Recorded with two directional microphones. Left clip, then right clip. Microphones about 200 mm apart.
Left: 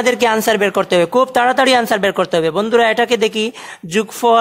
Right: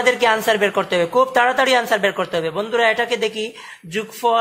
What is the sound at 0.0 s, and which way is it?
Speech, 55° left (ahead or behind).